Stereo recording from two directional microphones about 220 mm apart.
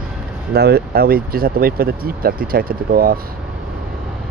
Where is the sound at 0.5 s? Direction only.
45° right (ahead or behind).